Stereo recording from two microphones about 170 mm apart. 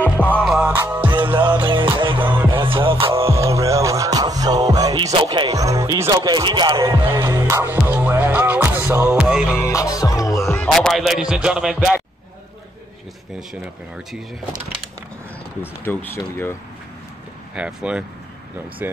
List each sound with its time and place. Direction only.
0.0 s music: 10° left (ahead or behind)
0.7 s music: 15° right (ahead or behind)
1.0 s music: 30° right (ahead or behind)
2.2 s music: 15° right (ahead or behind)
2.5 s music: 30° right (ahead or behind)
3.2 s music: 15° right (ahead or behind)
9.6 s music: 20° left (ahead or behind)
10.4 s music: 5° left (ahead or behind)
15.6 s speech: 10° left (ahead or behind)
17.6 s music: 5° right (ahead or behind)